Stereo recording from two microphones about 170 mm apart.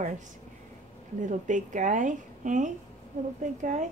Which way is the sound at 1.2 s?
45° right (ahead or behind).